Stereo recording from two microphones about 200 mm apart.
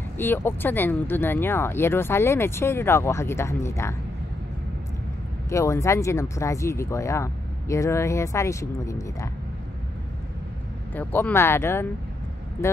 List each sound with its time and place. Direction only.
0.2 s speech: 10° left (ahead or behind)
5.5 s speech: 15° left (ahead or behind)
11.0 s speech: 10° left (ahead or behind)